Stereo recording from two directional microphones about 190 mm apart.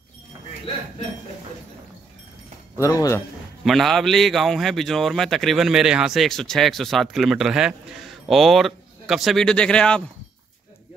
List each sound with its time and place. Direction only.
2.8 s speech: 15° left (ahead or behind)
3.6 s a man's voice: centre (ahead or behind)